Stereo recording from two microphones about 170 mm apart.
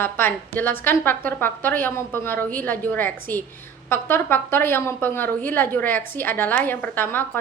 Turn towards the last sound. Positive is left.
turn(degrees=10)  # may be behind; listen again after turning